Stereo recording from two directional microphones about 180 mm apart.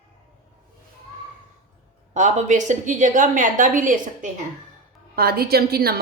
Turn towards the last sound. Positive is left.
turn(degrees=-60)  # may be behind; listen again after turning